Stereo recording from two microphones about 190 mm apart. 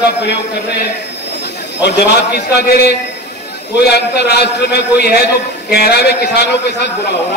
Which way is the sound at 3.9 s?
60° left (ahead or behind).